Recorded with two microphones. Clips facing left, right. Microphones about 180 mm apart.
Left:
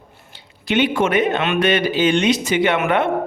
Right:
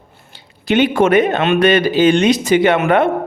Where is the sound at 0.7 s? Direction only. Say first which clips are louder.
Right 5 dB; 40° right (ahead or behind).